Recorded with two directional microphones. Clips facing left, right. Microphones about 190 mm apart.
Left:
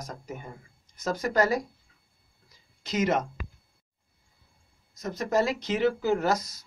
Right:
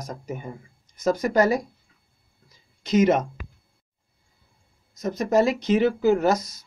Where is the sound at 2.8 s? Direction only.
20° right (ahead or behind).